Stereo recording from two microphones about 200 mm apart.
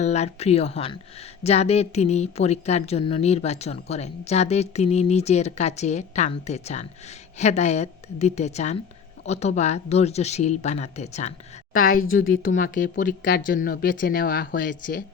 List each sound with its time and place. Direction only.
0.0 s a woman's voice: 35° left (ahead or behind)